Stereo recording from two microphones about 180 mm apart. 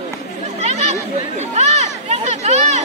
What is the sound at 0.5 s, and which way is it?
Chatter, 40° right (ahead or behind).